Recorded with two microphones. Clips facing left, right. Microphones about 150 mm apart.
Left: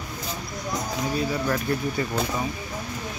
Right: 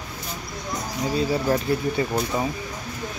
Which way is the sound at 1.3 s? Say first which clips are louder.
Right 3 dB; 30° right (ahead or behind).